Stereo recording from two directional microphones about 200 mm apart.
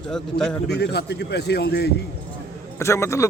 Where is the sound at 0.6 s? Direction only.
55° left (ahead or behind).